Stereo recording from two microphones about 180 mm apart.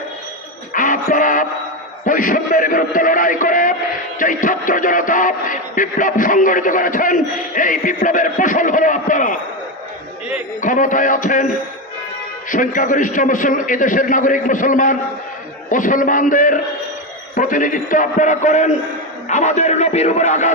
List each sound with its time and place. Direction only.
0.7 s music: 45° left (ahead or behind)
10.6 s music: 45° left (ahead or behind)
12.5 s music: 45° left (ahead or behind)
19.3 s speech: 40° left (ahead or behind)